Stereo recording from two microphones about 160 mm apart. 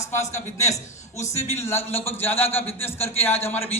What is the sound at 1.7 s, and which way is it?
A man's voice, 15° left (ahead or behind).